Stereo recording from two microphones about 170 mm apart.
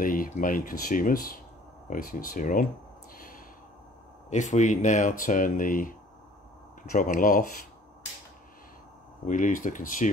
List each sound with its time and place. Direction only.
0.0 s speech: 55° left (ahead or behind)
4.3 s speech: 45° left (ahead or behind)
9.2 s speech: 50° left (ahead or behind)